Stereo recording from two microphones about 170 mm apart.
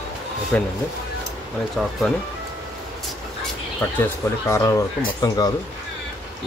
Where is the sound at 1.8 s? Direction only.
Centre (ahead or behind).